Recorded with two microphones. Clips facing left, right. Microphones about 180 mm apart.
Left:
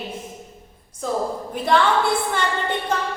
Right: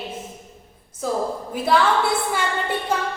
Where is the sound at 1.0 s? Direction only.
5° right (ahead or behind).